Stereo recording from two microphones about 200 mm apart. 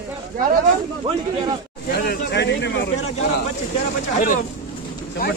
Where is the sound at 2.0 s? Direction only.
55° left (ahead or behind).